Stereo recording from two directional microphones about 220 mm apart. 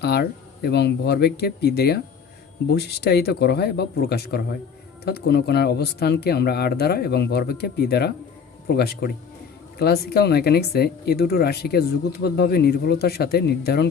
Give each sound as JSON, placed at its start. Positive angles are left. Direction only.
{"t": 0.0, "sound": "speech", "side_deg": 50}